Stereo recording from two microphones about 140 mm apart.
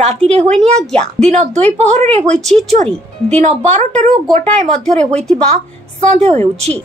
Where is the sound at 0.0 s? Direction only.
50° right (ahead or behind).